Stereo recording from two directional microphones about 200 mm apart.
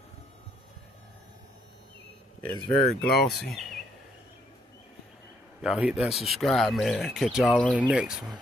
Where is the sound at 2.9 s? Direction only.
5° left (ahead or behind).